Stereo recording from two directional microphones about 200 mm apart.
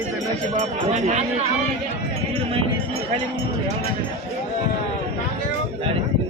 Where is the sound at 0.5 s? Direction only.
35° right (ahead or behind).